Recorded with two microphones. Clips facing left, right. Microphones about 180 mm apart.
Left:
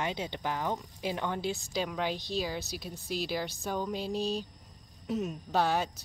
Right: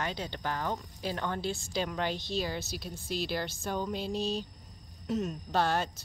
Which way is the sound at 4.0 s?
40° left (ahead or behind).